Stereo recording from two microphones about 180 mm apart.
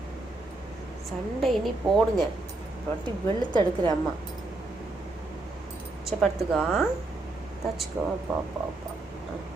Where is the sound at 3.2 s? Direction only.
20° left (ahead or behind).